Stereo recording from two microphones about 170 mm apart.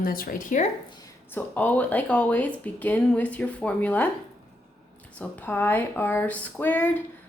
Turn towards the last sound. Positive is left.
turn(degrees=10)  # may be behind; listen again after turning